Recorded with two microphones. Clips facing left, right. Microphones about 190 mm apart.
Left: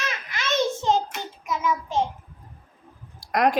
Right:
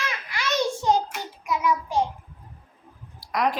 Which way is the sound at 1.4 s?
25° left (ahead or behind).